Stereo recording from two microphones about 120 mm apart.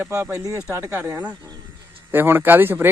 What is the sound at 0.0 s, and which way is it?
Speech, 15° right (ahead or behind).